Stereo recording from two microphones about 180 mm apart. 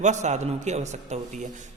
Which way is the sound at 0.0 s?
40° right (ahead or behind).